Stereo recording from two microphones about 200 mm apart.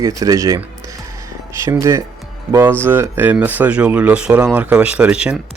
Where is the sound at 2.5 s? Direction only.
10° right (ahead or behind).